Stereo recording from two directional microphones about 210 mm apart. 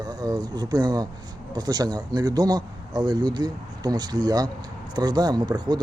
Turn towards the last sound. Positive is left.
turn(degrees=-20)  # may be behind; listen again after turning